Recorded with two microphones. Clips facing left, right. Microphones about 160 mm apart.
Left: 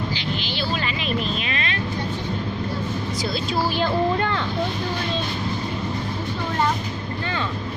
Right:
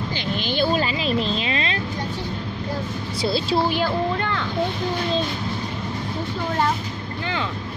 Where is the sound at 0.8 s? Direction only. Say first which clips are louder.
Right 3 dB; 30° right (ahead or behind).